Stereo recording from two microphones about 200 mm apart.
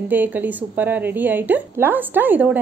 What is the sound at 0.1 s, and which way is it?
A woman's voice, 10° right (ahead or behind).